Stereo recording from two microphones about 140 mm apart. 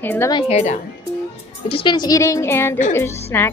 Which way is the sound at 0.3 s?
35° left (ahead or behind).